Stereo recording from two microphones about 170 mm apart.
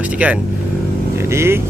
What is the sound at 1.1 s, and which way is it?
Vehicle, 15° right (ahead or behind).